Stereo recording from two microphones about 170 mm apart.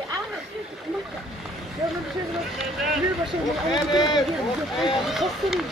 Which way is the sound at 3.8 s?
25° left (ahead or behind).